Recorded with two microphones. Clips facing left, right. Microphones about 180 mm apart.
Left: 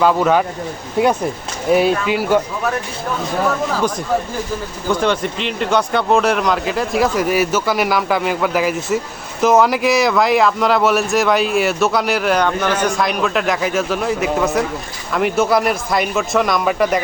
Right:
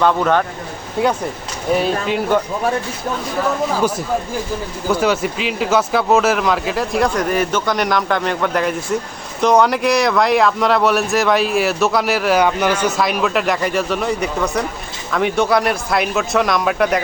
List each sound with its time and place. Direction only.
0.0 s speech: 5° left (ahead or behind)
3.8 s speech: 10° right (ahead or behind)